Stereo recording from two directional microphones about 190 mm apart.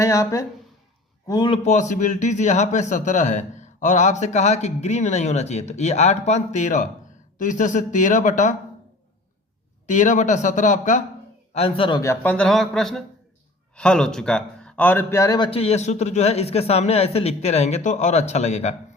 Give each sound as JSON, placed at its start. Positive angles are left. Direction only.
{"t": 0.0, "sound": "a man's voice", "side_deg": 15}
{"t": 1.6, "sound": "a man's voice", "side_deg": 40}
{"t": 9.8, "sound": "a man's voice", "side_deg": 40}
{"t": 11.5, "sound": "a man's voice", "side_deg": 30}
{"t": 12.2, "sound": "speech", "side_deg": 5}
{"t": 15.4, "sound": "a man's voice", "side_deg": 30}